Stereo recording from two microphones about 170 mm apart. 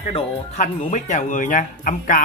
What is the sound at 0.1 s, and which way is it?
Speech, 45° left (ahead or behind).